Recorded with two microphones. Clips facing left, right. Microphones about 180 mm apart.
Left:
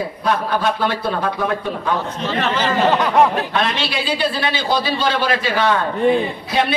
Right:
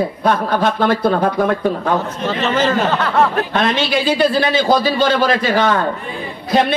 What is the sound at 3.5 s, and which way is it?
A man's voice, 45° right (ahead or behind).